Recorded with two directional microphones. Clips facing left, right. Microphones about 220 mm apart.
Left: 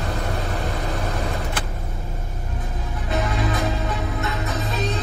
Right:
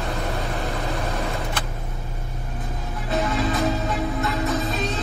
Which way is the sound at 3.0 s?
30° right (ahead or behind).